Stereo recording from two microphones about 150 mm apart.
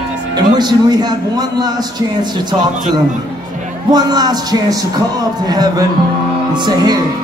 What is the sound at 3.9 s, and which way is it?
Speech, 25° right (ahead or behind).